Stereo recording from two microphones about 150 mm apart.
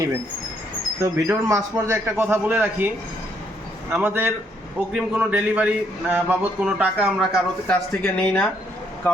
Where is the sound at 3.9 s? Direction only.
10° right (ahead or behind).